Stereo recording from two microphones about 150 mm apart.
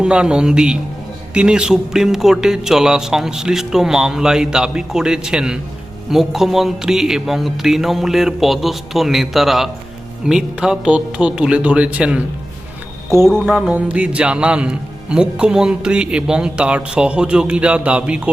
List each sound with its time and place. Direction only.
0.0 s speech: 5° right (ahead or behind)
13.4 s speech: 5° right (ahead or behind)